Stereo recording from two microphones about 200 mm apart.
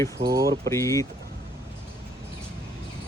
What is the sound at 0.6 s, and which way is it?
Speech, 15° left (ahead or behind).